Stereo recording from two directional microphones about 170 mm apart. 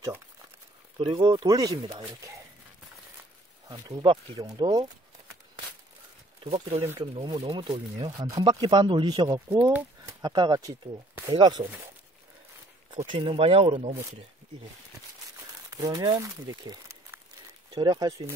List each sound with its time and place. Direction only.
0.9 s speech: 30° right (ahead or behind)
3.6 s speech: 20° right (ahead or behind)
6.4 s speech: 35° right (ahead or behind)
9.5 s speech: 10° right (ahead or behind)
10.2 s speech: 25° right (ahead or behind)
12.9 s speech: 30° right (ahead or behind)
15.7 s speech: 20° right (ahead or behind)